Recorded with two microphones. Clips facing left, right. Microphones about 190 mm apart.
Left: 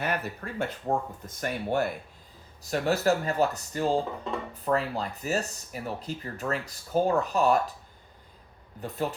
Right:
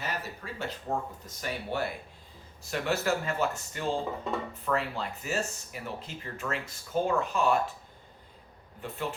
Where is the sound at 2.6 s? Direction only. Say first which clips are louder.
Left 5 dB; 40° left (ahead or behind).